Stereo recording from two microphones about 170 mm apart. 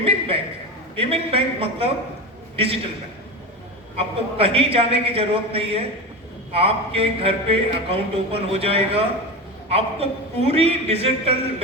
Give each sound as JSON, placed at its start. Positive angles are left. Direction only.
{"t": 0.0, "sound": "a sound", "side_deg": -35}
{"t": 0.9, "sound": "speech", "side_deg": -35}
{"t": 3.9, "sound": "speech", "side_deg": -35}